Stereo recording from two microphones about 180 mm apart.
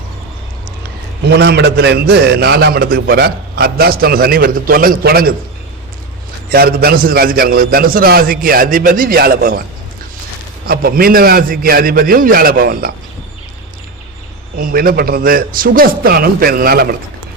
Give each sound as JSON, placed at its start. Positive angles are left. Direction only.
{"t": 1.2, "sound": "a man's voice", "side_deg": -70}
{"t": 6.5, "sound": "a man's voice", "side_deg": -55}
{"t": 10.7, "sound": "a man's voice", "side_deg": -55}
{"t": 14.5, "sound": "a man's voice", "side_deg": -55}